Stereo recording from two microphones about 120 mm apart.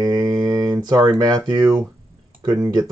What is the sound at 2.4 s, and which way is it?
Speech, 35° right (ahead or behind).